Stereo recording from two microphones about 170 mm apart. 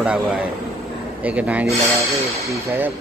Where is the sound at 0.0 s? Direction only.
5° right (ahead or behind).